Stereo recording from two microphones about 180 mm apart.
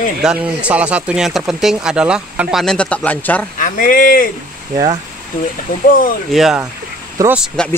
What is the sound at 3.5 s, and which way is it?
Speech, 50° left (ahead or behind).